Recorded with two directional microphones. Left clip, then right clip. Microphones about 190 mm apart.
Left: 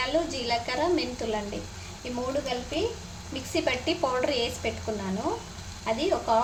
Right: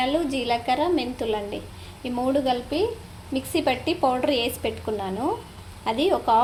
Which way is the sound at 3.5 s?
30° right (ahead or behind).